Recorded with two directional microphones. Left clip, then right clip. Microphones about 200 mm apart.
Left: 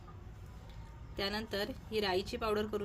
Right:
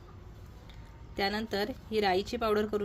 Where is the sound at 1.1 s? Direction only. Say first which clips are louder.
Right 5 dB; 15° right (ahead or behind).